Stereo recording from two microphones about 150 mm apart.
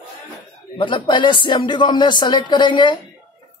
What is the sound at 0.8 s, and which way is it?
A man's voice, 30° left (ahead or behind).